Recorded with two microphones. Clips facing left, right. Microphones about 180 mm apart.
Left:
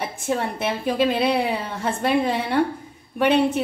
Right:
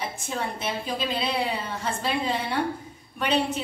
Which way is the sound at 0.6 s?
55° left (ahead or behind).